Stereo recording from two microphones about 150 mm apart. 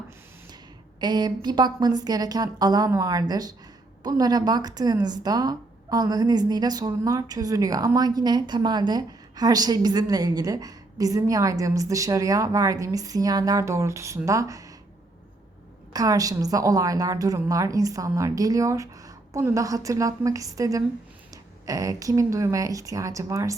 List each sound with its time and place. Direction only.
0.9 s speech: 30° right (ahead or behind)
15.9 s speech: 25° right (ahead or behind)